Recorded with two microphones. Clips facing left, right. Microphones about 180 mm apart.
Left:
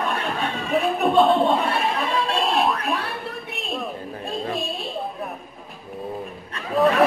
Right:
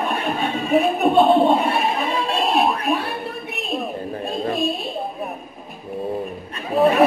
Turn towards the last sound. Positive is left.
turn(degrees=-15)  # may be behind; listen again after turning